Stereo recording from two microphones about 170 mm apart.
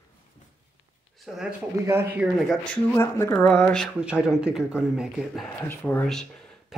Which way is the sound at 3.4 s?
5° left (ahead or behind).